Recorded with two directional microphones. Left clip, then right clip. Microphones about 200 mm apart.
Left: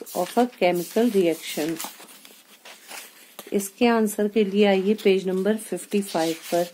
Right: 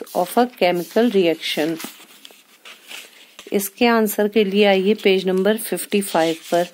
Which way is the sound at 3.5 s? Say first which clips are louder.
Right 4 dB; 35° right (ahead or behind).